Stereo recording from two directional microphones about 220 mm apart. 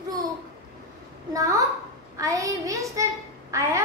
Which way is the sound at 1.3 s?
15° right (ahead or behind).